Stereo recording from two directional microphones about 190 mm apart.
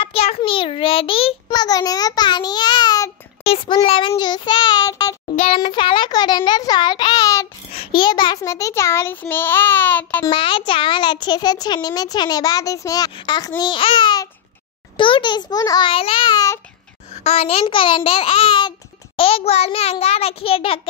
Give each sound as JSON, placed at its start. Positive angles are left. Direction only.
{"t": 0.0, "sound": "a child's voice", "side_deg": 30}
{"t": 5.3, "sound": "a child's voice", "side_deg": 30}
{"t": 10.3, "sound": "a child's voice", "side_deg": 25}
{"t": 17.1, "sound": "a child's voice", "side_deg": 35}